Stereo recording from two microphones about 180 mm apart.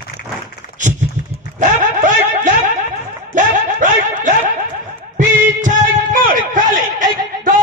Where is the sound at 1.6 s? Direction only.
45° right (ahead or behind).